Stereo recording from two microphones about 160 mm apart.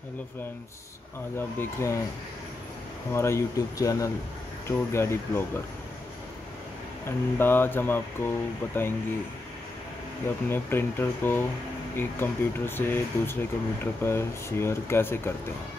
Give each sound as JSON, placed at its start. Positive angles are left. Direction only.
{"t": 1.6, "sound": "speech", "side_deg": 15}
{"t": 3.1, "sound": "speech", "side_deg": 15}
{"t": 7.1, "sound": "speech", "side_deg": 15}
{"t": 10.5, "sound": "speech", "side_deg": 15}